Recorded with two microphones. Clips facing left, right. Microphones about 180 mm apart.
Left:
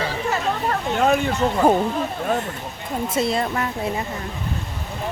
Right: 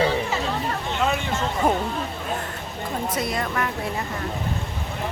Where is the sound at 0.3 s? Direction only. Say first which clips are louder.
Left 3 dB; 50° left (ahead or behind).